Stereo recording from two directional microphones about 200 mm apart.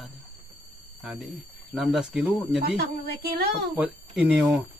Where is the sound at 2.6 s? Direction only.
55° right (ahead or behind).